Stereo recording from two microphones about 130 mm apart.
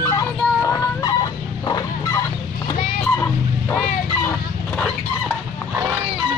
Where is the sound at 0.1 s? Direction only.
25° left (ahead or behind).